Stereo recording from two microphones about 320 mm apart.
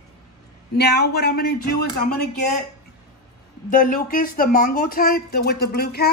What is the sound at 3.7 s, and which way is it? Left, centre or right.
Speech, left.